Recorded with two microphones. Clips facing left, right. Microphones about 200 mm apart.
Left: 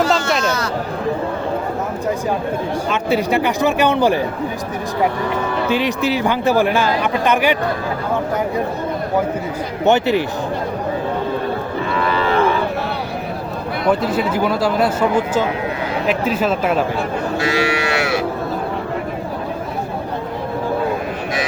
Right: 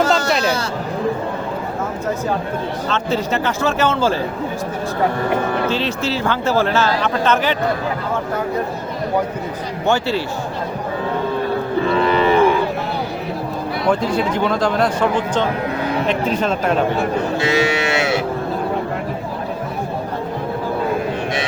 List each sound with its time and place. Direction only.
0.1 s speech: centre (ahead or behind)
0.4 s speech: 30° right (ahead or behind)
2.9 s speech: 10° left (ahead or behind)
5.6 s speech: 15° left (ahead or behind)
9.8 s speech: 20° left (ahead or behind)
11.9 s livestock: 20° right (ahead or behind)
13.9 s speech: 5° left (ahead or behind)
17.3 s moo: 25° right (ahead or behind)